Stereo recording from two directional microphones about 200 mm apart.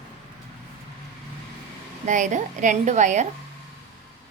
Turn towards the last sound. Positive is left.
turn(degrees=-35)  # may be behind; listen again after turning